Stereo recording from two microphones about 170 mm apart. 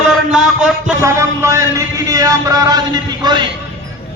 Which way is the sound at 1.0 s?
15° right (ahead or behind).